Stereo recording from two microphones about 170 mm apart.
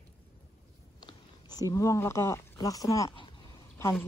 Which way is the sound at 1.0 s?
25° left (ahead or behind).